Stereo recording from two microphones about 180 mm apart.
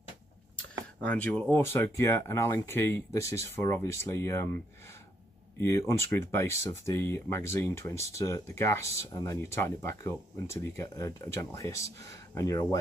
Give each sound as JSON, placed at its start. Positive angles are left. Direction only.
{"t": 0.6, "sound": "speech", "side_deg": 10}
{"t": 5.6, "sound": "speech", "side_deg": 15}